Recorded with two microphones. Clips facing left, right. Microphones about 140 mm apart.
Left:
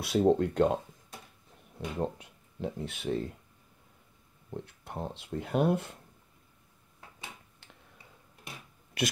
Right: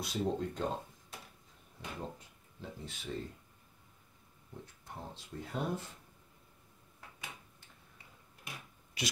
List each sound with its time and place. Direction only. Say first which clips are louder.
0.0 s speech: left 10 dB; 70° left (ahead or behind)
1.8 s speech: left 10 dB; 70° left (ahead or behind)
4.6 s speech: left 7 dB; 65° left (ahead or behind)
9.0 s speech: left 8 dB; 55° left (ahead or behind)